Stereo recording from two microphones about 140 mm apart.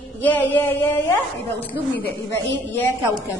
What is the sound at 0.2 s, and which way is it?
A woman's voice, 10° left (ahead or behind).